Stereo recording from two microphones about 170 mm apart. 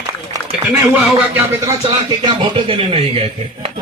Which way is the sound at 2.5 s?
35° right (ahead or behind).